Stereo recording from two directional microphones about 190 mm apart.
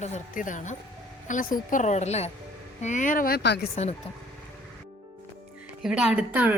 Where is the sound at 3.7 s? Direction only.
35° left (ahead or behind).